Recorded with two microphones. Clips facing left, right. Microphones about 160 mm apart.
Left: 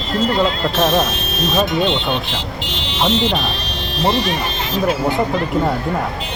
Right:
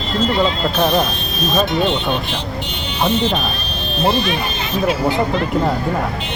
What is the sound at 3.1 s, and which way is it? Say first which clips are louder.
Speech: even; 80° left.